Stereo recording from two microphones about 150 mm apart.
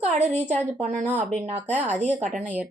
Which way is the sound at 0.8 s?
55° right (ahead or behind).